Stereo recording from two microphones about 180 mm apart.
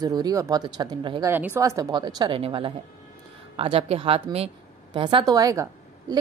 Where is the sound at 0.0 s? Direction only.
20° right (ahead or behind).